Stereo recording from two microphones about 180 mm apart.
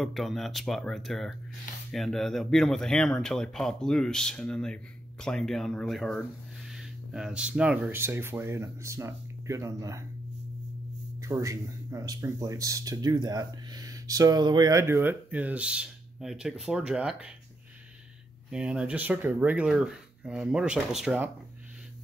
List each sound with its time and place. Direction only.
0.0 s speech: centre (ahead or behind); by 10.0 s 15° right (ahead or behind)
11.1 s speech: 15° right (ahead or behind)
18.5 s speech: 5° right (ahead or behind)